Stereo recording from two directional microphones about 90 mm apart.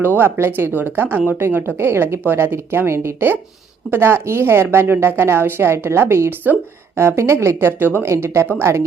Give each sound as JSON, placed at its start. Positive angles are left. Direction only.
{"t": 0.0, "sound": "a woman's voice", "side_deg": -25}